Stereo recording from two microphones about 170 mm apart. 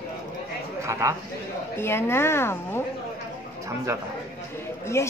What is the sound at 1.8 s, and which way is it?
A woman's voice, 15° left (ahead or behind).